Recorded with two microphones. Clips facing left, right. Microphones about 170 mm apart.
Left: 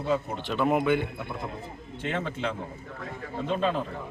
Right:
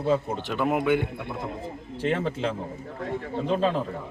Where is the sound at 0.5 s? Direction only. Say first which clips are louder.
Even; 5° right (ahead or behind).